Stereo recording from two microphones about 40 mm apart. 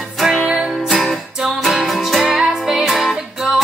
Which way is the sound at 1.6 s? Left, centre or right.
Centre.